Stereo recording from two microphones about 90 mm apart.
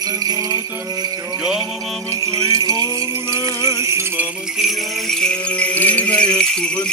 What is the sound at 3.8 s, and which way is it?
Jingle bell, 30° right (ahead or behind).